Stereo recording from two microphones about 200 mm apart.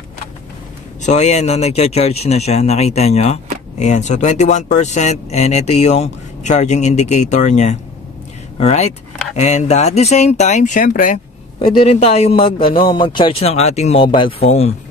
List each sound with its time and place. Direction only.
1.0 s speech: 35° left (ahead or behind)
11.6 s a man's voice: 30° left (ahead or behind)